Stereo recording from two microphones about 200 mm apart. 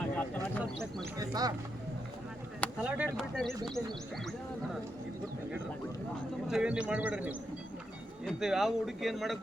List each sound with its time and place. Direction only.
0.2 s a sound: 5° left (ahead or behind)
1.2 s speech: 20° right (ahead or behind)
2.8 s speech: 5° right (ahead or behind)
6.5 s a man's voice: 5° right (ahead or behind)